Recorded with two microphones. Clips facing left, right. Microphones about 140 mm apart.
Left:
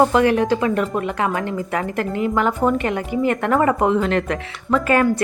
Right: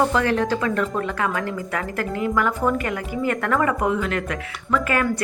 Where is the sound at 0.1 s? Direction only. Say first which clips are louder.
Left 4 dB; 15° left (ahead or behind).